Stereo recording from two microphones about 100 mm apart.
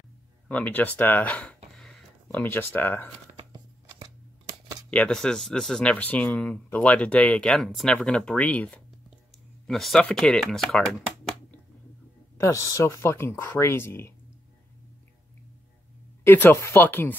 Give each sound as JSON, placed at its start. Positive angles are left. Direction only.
{"t": 0.5, "sound": "a sound", "side_deg": 15}
{"t": 2.4, "sound": "speech", "side_deg": 20}
{"t": 3.3, "sound": "a sound", "side_deg": -45}
{"t": 4.9, "sound": "speech", "side_deg": 10}
{"t": 9.7, "sound": "speech", "side_deg": 0}
{"t": 12.4, "sound": "speech", "side_deg": 30}
{"t": 16.3, "sound": "speech", "side_deg": 20}
{"t": 16.5, "sound": "speech", "side_deg": 30}
{"t": 16.8, "sound": "speech", "side_deg": 20}